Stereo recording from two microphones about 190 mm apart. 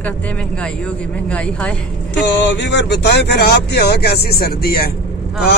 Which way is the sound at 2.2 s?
70° left (ahead or behind).